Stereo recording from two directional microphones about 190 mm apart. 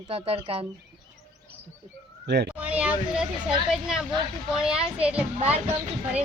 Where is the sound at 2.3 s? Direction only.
65° right (ahead or behind).